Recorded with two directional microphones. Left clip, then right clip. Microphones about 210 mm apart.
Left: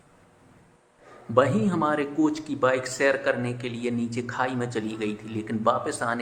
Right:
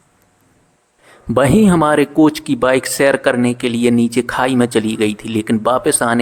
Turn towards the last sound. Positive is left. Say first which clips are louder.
# right 10 dB
turn(degrees=-45)  # may be behind; listen again after turning